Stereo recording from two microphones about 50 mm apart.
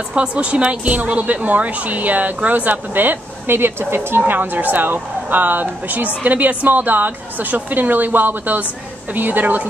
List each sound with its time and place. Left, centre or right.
0.1 s speech: right
4.3 s speech: right